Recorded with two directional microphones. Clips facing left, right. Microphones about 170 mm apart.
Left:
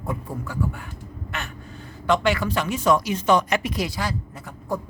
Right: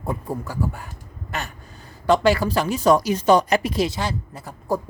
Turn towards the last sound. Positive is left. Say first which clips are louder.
# right 4 dB
turn(degrees=-30)  # may be behind; listen again after turning